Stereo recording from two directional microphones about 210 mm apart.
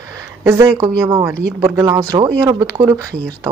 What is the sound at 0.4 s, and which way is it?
Speech, 15° right (ahead or behind).